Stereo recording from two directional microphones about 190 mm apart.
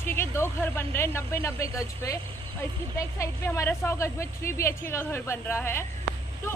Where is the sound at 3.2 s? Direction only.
15° left (ahead or behind).